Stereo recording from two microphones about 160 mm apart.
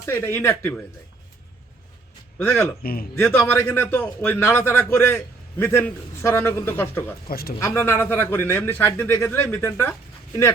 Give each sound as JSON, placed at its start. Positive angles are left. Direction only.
{"t": 0.0, "sound": "a man's voice", "side_deg": 15}
{"t": 2.4, "sound": "a man's voice", "side_deg": 15}
{"t": 2.8, "sound": "speech", "side_deg": 65}
{"t": 3.2, "sound": "a man's voice", "side_deg": 15}
{"t": 7.3, "sound": "speech", "side_deg": 70}
{"t": 7.6, "sound": "a man's voice", "side_deg": 15}